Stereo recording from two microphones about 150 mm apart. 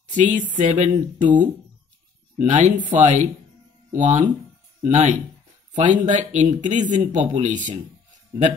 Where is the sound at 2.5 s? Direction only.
55° right (ahead or behind).